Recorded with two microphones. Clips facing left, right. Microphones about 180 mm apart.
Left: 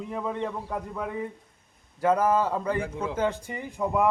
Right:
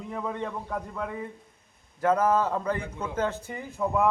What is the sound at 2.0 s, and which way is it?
A man's voice, 10° left (ahead or behind).